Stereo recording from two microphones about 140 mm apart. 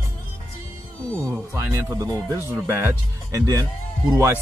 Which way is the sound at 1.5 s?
20° right (ahead or behind).